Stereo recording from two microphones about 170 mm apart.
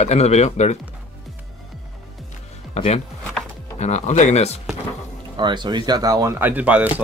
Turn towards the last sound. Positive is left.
turn(degrees=-10)  # may be behind; listen again after turning